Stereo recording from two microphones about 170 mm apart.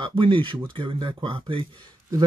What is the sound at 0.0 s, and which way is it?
Speech, 30° right (ahead or behind).